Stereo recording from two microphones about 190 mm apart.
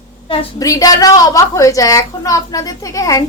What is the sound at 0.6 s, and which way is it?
A woman's voice, 20° left (ahead or behind).